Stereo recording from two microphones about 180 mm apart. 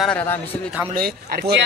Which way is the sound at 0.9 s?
60° right (ahead or behind).